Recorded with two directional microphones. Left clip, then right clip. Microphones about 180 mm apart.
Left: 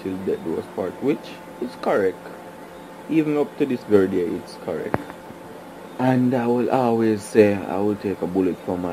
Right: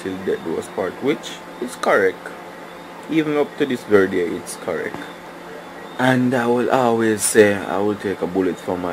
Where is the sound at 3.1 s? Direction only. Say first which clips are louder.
Right 2 dB; 5° right (ahead or behind).